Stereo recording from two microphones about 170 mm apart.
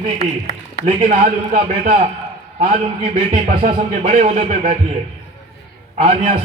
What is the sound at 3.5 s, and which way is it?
Music, 55° right (ahead or behind).